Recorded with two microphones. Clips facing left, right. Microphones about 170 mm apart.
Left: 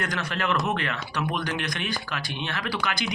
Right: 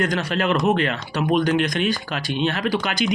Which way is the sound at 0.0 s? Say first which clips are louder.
Right 7 dB; 25° right (ahead or behind).